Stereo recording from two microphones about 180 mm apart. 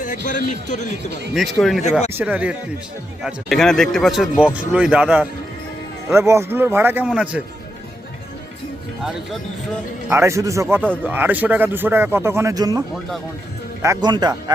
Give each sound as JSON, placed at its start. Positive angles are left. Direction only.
{"t": 0.3, "sound": "a man's voice", "side_deg": 45}
{"t": 1.3, "sound": "speech", "side_deg": 0}
{"t": 10.1, "sound": "speech", "side_deg": -15}
{"t": 13.8, "sound": "speech", "side_deg": -20}